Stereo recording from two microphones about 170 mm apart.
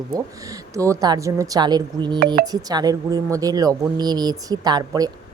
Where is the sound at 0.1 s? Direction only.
20° right (ahead or behind).